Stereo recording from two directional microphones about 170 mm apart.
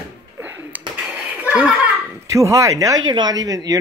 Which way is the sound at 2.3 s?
20° right (ahead or behind).